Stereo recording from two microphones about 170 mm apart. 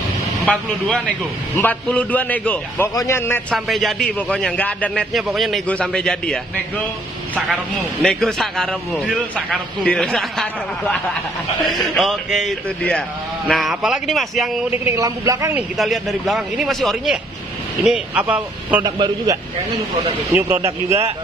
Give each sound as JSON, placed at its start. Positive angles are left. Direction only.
{"t": 0.5, "sound": "a man's voice", "side_deg": 5}
{"t": 3.5, "sound": "a man's voice", "side_deg": 0}
{"t": 8.0, "sound": "a man's voice", "side_deg": 0}
{"t": 14.7, "sound": "a man's voice", "side_deg": -15}
{"t": 15.8, "sound": "a man's voice", "side_deg": 0}
{"t": 18.8, "sound": "a man's voice", "side_deg": -25}
{"t": 20.3, "sound": "speech", "side_deg": -15}